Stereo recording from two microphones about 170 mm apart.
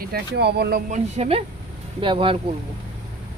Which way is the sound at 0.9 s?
40° right (ahead or behind).